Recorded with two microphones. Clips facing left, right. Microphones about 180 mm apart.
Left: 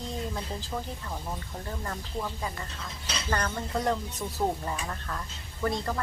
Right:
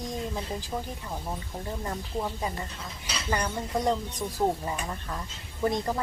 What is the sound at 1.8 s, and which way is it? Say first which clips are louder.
Speech: right 3 dB; 20° right (ahead or behind).